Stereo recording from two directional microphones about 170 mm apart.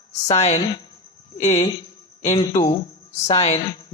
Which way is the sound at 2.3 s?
25° left (ahead or behind).